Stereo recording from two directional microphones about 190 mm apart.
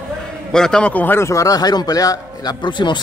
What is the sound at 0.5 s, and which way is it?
A man's voice, 5° left (ahead or behind).